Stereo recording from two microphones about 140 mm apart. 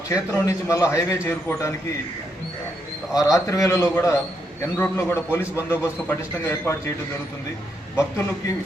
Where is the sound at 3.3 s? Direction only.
20° left (ahead or behind).